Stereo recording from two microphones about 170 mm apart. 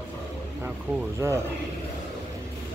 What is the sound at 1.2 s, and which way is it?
Speech, 15° right (ahead or behind).